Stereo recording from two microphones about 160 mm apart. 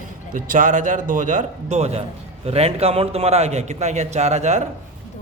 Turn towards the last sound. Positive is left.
turn(degrees=-45)  # may be behind; listen again after turning